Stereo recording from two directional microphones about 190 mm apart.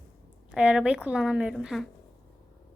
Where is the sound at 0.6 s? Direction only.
5° right (ahead or behind).